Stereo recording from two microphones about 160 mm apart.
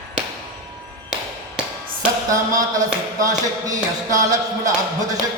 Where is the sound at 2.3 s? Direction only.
20° right (ahead or behind).